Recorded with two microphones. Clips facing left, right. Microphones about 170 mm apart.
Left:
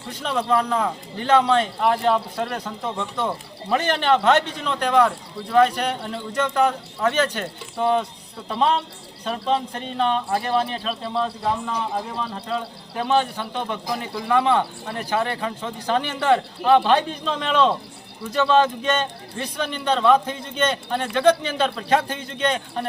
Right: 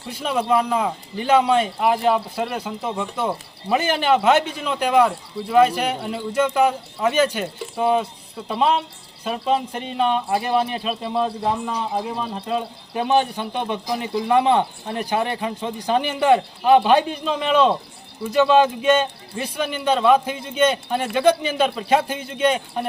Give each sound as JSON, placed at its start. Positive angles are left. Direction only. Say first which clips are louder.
{"t": 0.1, "sound": "a man's voice", "louder": "right 2 dB", "side_deg": -10}